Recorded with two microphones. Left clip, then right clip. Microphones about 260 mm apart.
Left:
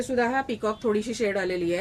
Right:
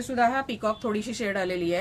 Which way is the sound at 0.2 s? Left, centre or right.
Right.